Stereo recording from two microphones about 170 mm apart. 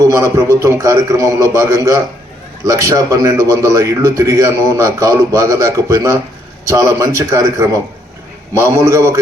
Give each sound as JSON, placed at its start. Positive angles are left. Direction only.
{"t": 0.0, "sound": "a man's voice", "side_deg": -20}